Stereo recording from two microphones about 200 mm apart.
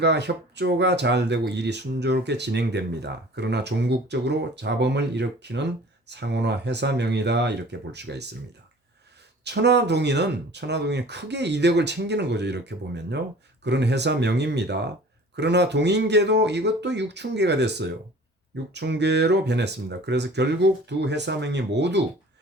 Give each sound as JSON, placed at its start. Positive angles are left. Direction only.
{"t": 0.0, "sound": "speech", "side_deg": -60}
{"t": 9.4, "sound": "speech", "side_deg": -55}